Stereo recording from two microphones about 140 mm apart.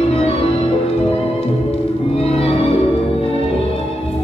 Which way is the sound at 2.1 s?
45° left (ahead or behind).